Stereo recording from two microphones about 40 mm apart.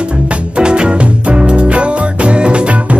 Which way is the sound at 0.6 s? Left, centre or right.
Right.